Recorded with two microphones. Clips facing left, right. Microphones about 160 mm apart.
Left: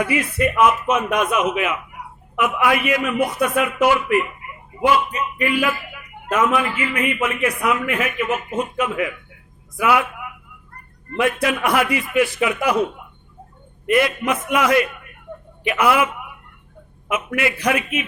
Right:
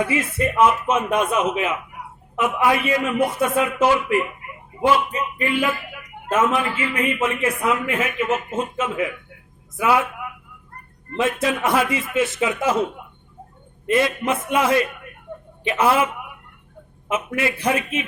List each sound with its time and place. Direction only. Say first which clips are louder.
0.0 s a man's voice: left 2 dB; 25° right (ahead or behind)
11.2 s a man's voice: left 1 dB; 20° right (ahead or behind)
13.8 s a man's voice: left 1 dB; 25° right (ahead or behind)
17.1 s a man's voice: left 1 dB; 30° right (ahead or behind)